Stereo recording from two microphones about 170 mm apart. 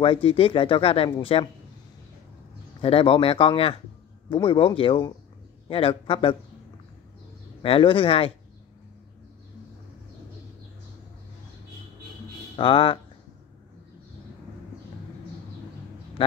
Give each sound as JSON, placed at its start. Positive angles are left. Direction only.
{"t": 0.0, "sound": "speech", "side_deg": 30}
{"t": 2.8, "sound": "speech", "side_deg": 35}
{"t": 7.6, "sound": "speech", "side_deg": 30}
{"t": 12.5, "sound": "speech", "side_deg": 30}
{"t": 16.2, "sound": "speech", "side_deg": 30}